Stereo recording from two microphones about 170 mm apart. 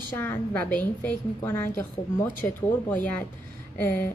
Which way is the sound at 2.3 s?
50° left (ahead or behind).